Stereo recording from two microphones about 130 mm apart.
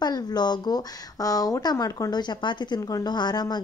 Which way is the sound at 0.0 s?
30° left (ahead or behind).